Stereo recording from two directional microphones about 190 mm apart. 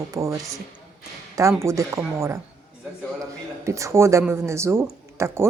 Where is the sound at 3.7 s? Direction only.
15° right (ahead or behind).